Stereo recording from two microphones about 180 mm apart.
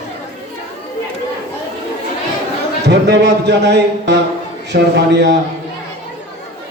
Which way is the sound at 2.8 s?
70° right (ahead or behind).